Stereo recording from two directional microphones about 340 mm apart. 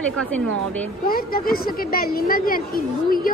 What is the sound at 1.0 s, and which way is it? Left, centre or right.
A woman's voice, left.